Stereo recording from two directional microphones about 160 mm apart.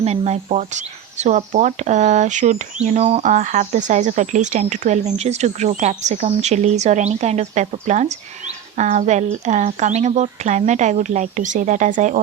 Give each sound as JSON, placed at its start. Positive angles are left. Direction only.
{"t": 0.0, "sound": "speech", "side_deg": -45}